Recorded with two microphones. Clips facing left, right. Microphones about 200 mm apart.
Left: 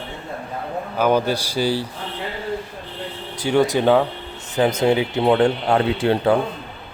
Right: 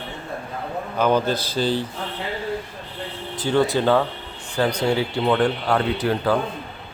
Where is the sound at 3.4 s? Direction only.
15° left (ahead or behind).